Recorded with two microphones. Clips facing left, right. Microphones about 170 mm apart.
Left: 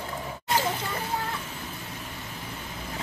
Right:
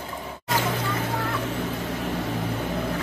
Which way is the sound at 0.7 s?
85° right.